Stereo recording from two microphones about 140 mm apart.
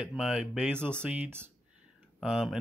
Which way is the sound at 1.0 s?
15° right (ahead or behind).